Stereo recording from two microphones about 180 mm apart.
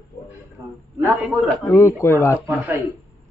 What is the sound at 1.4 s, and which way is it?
Speech, 15° left (ahead or behind).